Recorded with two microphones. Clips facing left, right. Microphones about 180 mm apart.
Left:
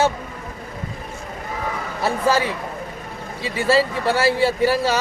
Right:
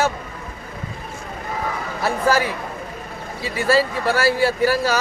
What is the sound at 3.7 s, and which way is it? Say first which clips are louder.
A man's voice: even; 25° left (ahead or behind).